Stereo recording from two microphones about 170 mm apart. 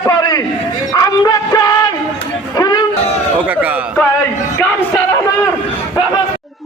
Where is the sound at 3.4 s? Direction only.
10° right (ahead or behind).